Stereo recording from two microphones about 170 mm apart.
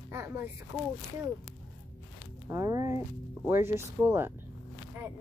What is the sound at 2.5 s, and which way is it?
Speech, 20° right (ahead or behind).